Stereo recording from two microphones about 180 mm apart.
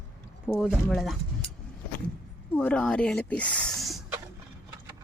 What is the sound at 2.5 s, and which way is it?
Speech, 10° left (ahead or behind).